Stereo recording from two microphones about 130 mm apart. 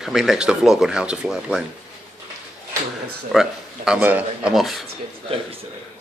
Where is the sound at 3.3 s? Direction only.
5° right (ahead or behind).